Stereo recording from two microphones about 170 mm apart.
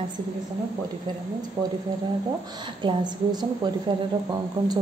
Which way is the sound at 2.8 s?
25° right (ahead or behind).